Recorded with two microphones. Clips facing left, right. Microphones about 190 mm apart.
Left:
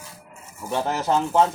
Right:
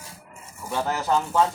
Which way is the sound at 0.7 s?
20° left (ahead or behind).